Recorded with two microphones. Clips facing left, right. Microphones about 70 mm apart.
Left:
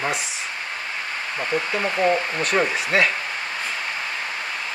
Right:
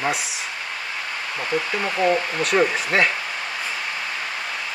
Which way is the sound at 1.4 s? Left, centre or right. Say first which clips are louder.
Even; left.